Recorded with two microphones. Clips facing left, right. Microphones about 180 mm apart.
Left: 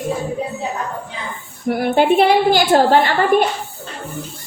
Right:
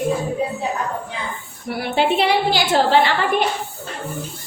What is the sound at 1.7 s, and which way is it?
A woman's voice, 50° left (ahead or behind).